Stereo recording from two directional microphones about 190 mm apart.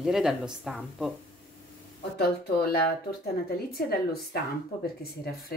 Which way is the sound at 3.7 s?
55° left (ahead or behind).